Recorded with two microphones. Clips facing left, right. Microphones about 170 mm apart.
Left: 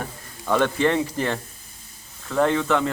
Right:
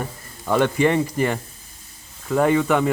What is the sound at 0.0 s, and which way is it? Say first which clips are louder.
Speech: right 2 dB; 5° right (ahead or behind).